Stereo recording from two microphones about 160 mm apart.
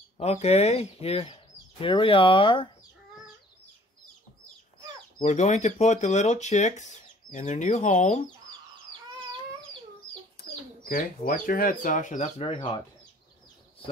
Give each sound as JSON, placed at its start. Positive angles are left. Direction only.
{"t": 0.2, "sound": "speech", "side_deg": 40}
{"t": 5.2, "sound": "speech", "side_deg": 45}
{"t": 10.4, "sound": "chicken", "side_deg": 80}
{"t": 10.9, "sound": "speech", "side_deg": 60}